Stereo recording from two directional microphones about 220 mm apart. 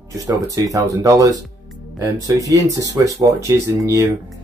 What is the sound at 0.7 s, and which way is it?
Speech, 15° right (ahead or behind).